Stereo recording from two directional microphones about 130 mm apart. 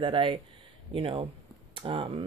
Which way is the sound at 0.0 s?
40° right (ahead or behind).